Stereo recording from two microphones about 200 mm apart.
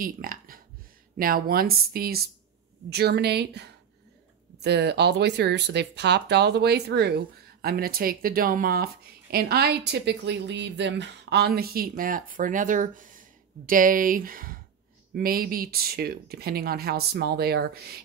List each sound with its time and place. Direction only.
0.0 s speech: 45° right (ahead or behind)